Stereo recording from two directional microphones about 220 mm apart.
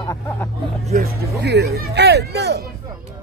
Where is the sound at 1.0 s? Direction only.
45° right (ahead or behind).